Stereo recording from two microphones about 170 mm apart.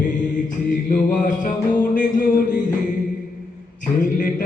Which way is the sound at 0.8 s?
50° left (ahead or behind).